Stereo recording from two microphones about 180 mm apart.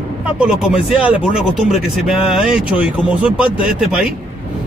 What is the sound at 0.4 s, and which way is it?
Speech, 5° right (ahead or behind).